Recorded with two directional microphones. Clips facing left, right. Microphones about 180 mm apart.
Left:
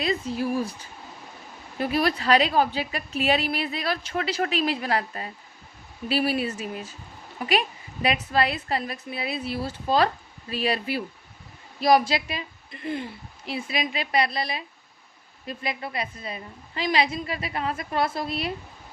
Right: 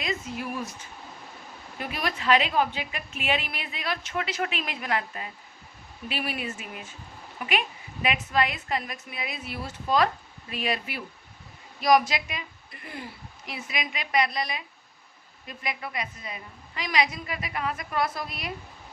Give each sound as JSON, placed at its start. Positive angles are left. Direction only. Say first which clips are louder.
{"t": 0.0, "sound": "a woman's voice", "louder": "left 6 dB", "side_deg": 35}